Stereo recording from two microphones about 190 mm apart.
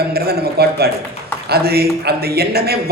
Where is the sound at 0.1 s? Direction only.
55° right (ahead or behind).